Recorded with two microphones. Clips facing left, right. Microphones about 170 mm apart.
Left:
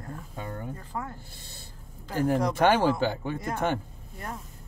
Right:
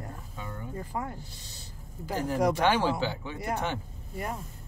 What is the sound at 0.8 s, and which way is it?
Speech, 10° right (ahead or behind).